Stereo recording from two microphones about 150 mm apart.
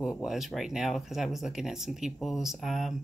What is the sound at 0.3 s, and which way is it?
Speech, centre (ahead or behind).